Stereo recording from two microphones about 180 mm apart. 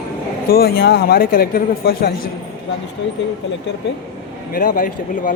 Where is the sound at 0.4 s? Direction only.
55° left (ahead or behind).